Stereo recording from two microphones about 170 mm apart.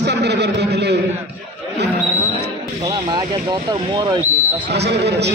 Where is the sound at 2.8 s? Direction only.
25° right (ahead or behind).